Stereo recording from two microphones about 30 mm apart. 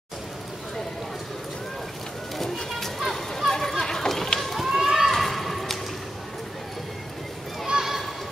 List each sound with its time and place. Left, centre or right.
2.3 s a sound: centre
3.0 s a sound: centre
3.4 s run: centre
4.4 s run: centre
4.7 s horse: centre
5.1 s horse: centre